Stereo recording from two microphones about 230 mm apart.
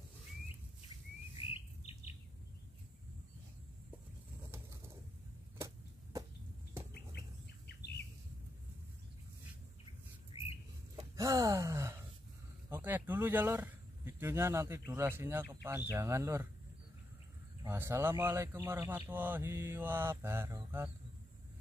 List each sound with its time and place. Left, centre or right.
1.5 s bird: left
10.3 s bird: left
11.1 s gasp: centre
12.6 s speech: centre
17.6 s speech: centre